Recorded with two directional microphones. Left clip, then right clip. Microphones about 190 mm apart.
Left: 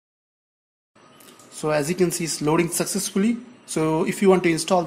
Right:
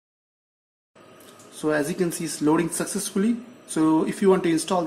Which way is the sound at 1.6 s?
35° left (ahead or behind).